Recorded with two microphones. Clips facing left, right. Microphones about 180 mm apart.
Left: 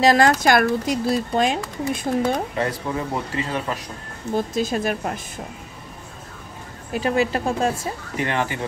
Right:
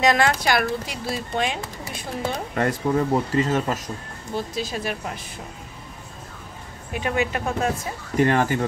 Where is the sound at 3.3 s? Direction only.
45° right (ahead or behind).